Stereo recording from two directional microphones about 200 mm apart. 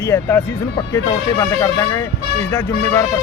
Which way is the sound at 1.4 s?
15° left (ahead or behind).